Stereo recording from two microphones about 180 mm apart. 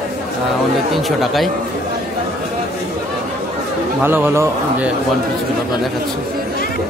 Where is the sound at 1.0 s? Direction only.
Centre (ahead or behind).